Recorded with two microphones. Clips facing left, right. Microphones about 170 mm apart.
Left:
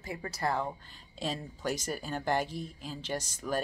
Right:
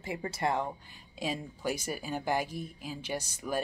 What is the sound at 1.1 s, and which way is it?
Speech, 10° right (ahead or behind).